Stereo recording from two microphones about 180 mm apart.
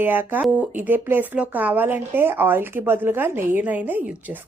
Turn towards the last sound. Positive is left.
turn(degrees=-10)  # may be behind; listen again after turning